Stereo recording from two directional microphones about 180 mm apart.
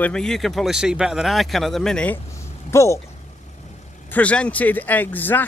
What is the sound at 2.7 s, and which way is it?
Speech, 15° left (ahead or behind).